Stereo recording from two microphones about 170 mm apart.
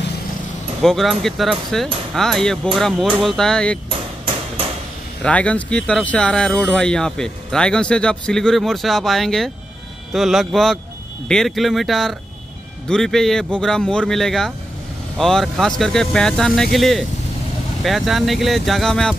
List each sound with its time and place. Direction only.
0.8 s speech: centre (ahead or behind)
3.9 s hammer: 30° right (ahead or behind)
5.2 s speech: 5° left (ahead or behind)